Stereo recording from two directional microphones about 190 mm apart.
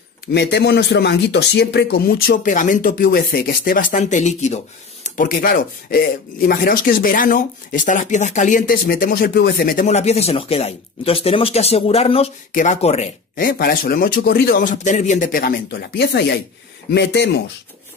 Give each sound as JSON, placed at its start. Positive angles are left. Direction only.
{"t": 0.3, "sound": "speech", "side_deg": 60}
{"t": 13.4, "sound": "speech", "side_deg": 50}